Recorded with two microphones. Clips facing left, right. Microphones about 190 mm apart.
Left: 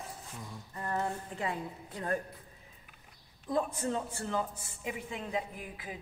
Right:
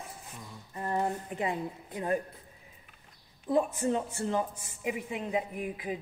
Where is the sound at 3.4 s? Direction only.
15° right (ahead or behind).